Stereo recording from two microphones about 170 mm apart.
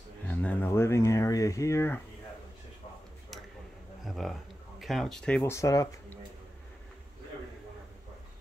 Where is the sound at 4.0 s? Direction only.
Centre (ahead or behind); by 5.8 s 20° left (ahead or behind).